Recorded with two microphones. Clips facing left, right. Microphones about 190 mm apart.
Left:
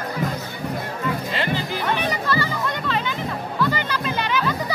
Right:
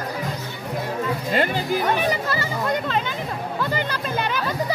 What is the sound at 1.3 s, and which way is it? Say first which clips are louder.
Music: right 4 dB; 45° right (ahead or behind).